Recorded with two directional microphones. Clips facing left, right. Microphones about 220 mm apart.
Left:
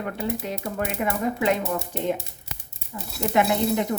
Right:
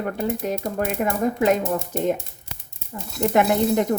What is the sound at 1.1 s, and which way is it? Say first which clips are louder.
Speech: right 4 dB; 45° right (ahead or behind).